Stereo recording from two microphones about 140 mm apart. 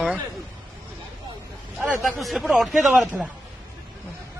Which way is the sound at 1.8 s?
5° right (ahead or behind).